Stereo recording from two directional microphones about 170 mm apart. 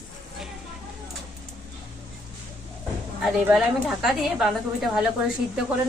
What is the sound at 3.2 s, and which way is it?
A woman's voice, centre (ahead or behind).